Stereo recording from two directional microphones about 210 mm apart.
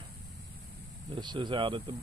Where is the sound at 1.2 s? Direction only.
20° right (ahead or behind).